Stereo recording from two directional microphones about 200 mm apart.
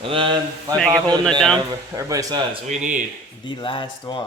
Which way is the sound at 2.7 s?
35° right (ahead or behind).